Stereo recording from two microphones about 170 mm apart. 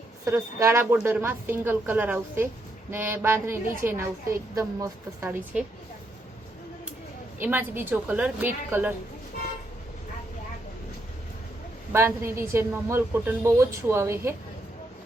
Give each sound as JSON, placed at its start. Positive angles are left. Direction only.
{"t": 0.3, "sound": "a woman's voice", "side_deg": -15}
{"t": 7.3, "sound": "a woman's voice", "side_deg": -10}
{"t": 11.9, "sound": "a woman's voice", "side_deg": -15}